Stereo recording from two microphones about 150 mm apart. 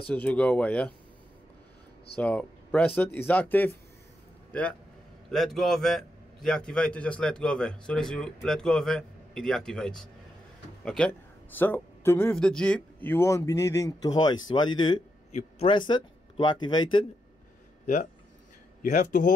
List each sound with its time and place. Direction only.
0.1 s a man's voice: 10° left (ahead or behind)
2.1 s a man's voice: 10° left (ahead or behind); by 17.0 s 30° left (ahead or behind)
18.8 s speech: 60° left (ahead or behind)